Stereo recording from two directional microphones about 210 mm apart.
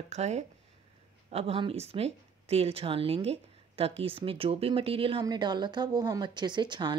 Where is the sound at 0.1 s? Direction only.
30° right (ahead or behind).